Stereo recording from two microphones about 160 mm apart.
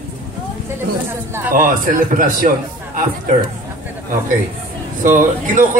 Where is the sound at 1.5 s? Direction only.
55° right (ahead or behind).